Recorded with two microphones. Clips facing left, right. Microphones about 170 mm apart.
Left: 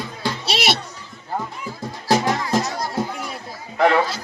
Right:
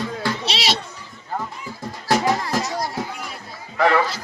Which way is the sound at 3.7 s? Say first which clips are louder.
Left 1 dB; 20° left (ahead or behind).